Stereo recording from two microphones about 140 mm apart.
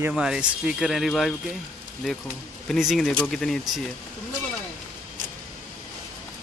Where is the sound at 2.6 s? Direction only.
Centre (ahead or behind).